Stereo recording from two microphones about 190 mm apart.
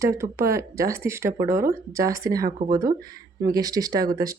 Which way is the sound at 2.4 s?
50° right (ahead or behind).